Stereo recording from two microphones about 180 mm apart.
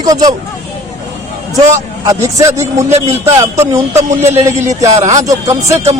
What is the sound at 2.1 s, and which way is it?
A man's voice, 20° right (ahead or behind).